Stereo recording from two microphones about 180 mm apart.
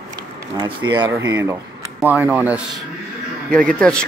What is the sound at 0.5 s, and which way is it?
Speech, 25° right (ahead or behind).